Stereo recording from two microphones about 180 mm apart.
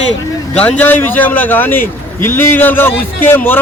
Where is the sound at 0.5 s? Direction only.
10° left (ahead or behind).